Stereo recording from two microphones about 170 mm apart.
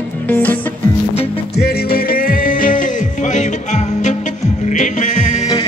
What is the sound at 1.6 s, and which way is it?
Music, 65° left (ahead or behind).